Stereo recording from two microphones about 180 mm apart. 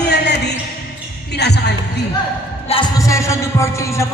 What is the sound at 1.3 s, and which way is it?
Speech, 65° left (ahead or behind).